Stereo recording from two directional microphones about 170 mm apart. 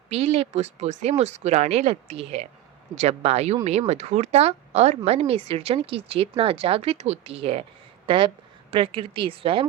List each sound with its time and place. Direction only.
0.1 s speech: 35° right (ahead or behind)